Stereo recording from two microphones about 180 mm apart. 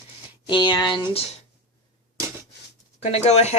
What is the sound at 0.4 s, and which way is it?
Speech, 25° left (ahead or behind).